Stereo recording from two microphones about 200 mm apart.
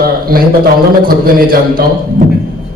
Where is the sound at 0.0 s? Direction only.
50° right (ahead or behind).